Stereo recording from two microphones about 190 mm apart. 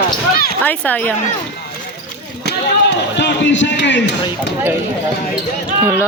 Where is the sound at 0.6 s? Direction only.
10° left (ahead or behind).